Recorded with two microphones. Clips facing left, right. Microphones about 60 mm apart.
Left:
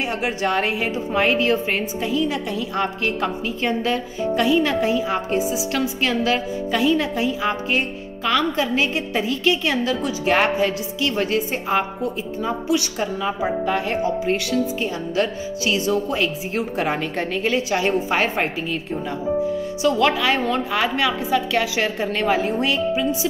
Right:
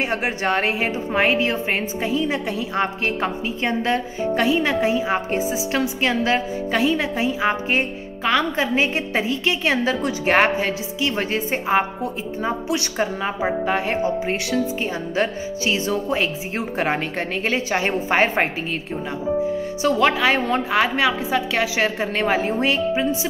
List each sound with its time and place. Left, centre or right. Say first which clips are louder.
0.4 s a woman's voice: even; right
19.8 s speech: right 1 dB; right